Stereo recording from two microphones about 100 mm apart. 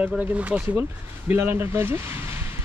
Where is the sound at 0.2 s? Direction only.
15° right (ahead or behind).